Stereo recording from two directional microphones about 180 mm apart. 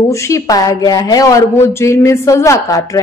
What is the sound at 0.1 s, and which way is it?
A woman's voice, 20° left (ahead or behind).